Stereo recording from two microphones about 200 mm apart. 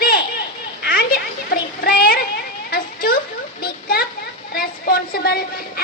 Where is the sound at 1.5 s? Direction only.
45° left (ahead or behind).